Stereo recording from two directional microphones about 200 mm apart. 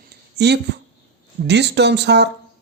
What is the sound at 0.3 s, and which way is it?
Speech, 55° right (ahead or behind).